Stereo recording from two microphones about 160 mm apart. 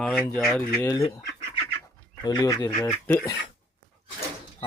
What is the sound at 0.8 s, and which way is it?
Speech, 15° left (ahead or behind).